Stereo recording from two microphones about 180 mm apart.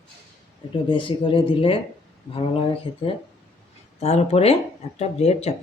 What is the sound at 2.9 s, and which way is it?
Speech, 30° left (ahead or behind).